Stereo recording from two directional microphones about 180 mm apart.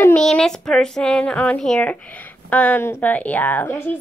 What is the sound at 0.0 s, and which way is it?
A woman's voice, 5° left (ahead or behind).